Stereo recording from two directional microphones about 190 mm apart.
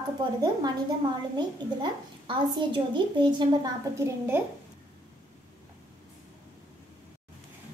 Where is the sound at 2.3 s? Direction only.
25° right (ahead or behind).